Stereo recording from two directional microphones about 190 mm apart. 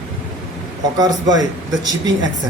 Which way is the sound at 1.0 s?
20° right (ahead or behind).